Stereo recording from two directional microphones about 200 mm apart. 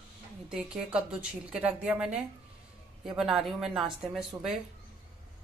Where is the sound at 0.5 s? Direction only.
5° right (ahead or behind).